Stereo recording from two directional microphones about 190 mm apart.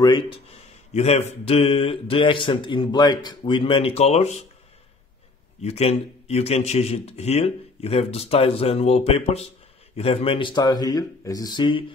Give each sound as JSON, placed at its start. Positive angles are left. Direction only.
{"t": 0.0, "sound": "speech", "side_deg": 25}
{"t": 5.6, "sound": "a man's voice", "side_deg": 35}